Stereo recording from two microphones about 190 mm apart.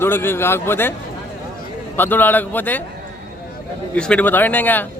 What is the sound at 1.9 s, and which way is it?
Speech, 10° left (ahead or behind).